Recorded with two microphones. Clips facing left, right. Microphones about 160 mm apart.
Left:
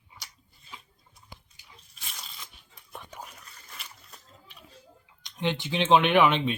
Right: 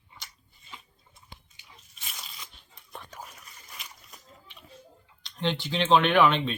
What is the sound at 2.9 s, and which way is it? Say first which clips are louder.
Whispering: even; 10° left (ahead or behind).